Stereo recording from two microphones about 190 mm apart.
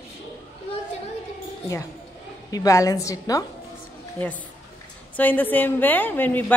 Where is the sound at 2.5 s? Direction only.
15° left (ahead or behind).